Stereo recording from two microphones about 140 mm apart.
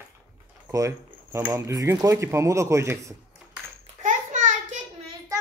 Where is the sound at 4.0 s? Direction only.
65° right (ahead or behind).